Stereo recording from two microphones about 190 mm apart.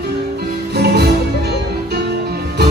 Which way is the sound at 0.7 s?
60° right (ahead or behind).